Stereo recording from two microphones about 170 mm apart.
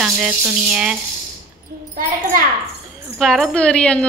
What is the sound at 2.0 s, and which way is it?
Speech, 55° right (ahead or behind).